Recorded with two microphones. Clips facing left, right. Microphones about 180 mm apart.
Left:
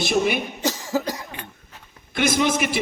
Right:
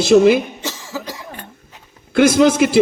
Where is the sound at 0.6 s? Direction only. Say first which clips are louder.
Left 4 dB; 40° left (ahead or behind).